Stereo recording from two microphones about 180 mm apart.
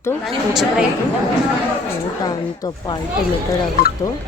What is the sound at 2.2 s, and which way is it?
Speech, 20° left (ahead or behind).